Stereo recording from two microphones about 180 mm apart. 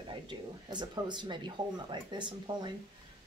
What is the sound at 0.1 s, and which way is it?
Speech, 25° right (ahead or behind).